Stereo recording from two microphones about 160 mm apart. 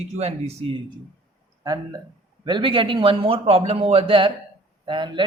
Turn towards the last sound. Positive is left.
turn(degrees=-30)  # may be behind; listen again after turning